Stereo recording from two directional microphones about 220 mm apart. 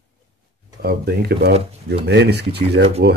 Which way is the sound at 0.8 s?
45° right (ahead or behind).